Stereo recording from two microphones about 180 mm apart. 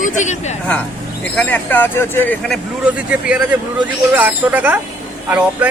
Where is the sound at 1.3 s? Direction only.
10° left (ahead or behind).